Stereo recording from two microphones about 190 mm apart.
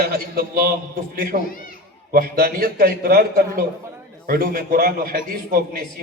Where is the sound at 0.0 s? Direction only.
50° right (ahead or behind).